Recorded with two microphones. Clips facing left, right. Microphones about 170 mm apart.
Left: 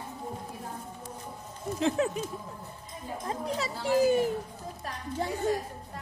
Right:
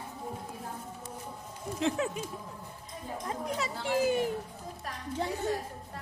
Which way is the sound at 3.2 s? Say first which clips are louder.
Left 2 dB; 35° left (ahead or behind).